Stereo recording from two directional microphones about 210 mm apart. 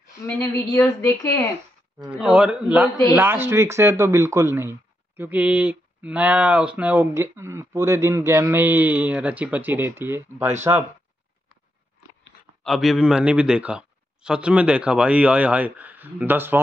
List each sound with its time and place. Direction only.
0.7 s speech: 15° left (ahead or behind)
2.0 s speech: 5° right (ahead or behind)
12.6 s speech: centre (ahead or behind)